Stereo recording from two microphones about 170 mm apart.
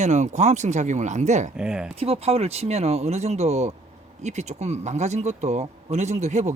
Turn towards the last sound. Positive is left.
turn(degrees=-45)  # may be behind; listen again after turning